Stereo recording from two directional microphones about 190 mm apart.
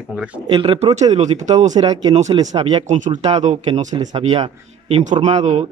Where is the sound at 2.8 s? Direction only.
40° right (ahead or behind).